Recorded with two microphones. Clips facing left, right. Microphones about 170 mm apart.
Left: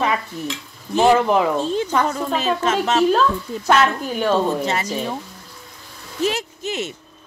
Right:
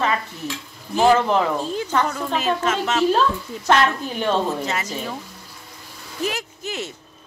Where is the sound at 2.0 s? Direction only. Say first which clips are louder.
Left 2 dB; 30° left (ahead or behind).